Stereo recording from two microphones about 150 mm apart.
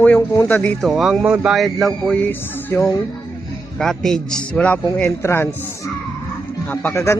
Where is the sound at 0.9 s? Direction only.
Centre (ahead or behind).